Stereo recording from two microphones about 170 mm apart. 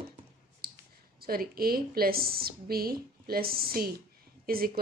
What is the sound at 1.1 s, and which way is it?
A woman's voice, 60° right (ahead or behind).